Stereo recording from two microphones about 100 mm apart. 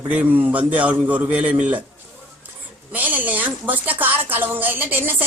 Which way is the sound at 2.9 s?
15° right (ahead or behind).